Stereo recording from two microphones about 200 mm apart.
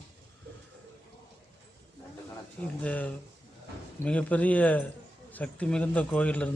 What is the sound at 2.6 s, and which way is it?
A man's voice, 5° left (ahead or behind).